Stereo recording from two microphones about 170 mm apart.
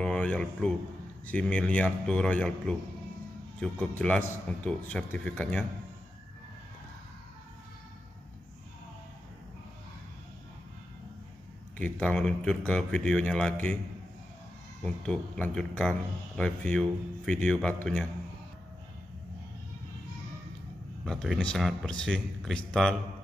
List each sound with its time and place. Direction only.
0.0 s a man's voice: 5° left (ahead or behind)
3.8 s speech: 5° left (ahead or behind)
11.8 s speech: 5° left (ahead or behind)
14.8 s speech: 5° left (ahead or behind)
21.0 s speech: centre (ahead or behind)